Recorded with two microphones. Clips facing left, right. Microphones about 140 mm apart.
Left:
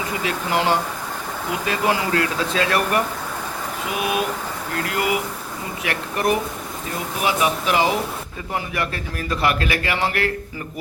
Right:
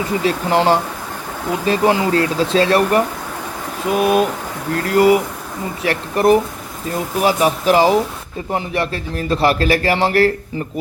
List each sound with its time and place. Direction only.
0.3 s a man's voice: 35° right (ahead or behind)